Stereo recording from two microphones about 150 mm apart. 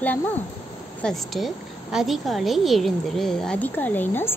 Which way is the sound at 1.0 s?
5° left (ahead or behind).